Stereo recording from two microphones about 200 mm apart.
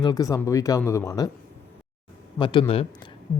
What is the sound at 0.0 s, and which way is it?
Speech, 20° left (ahead or behind).